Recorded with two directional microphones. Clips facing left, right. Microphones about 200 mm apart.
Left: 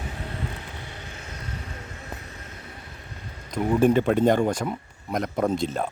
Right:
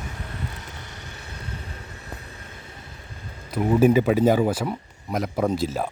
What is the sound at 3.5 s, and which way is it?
Speech, 5° right (ahead or behind).